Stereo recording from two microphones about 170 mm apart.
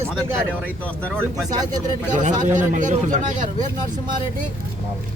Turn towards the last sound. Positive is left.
turn(degrees=-45)  # may be behind; listen again after turning